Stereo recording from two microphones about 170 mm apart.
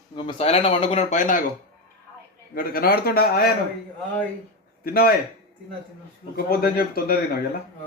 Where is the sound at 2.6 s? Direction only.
60° left (ahead or behind).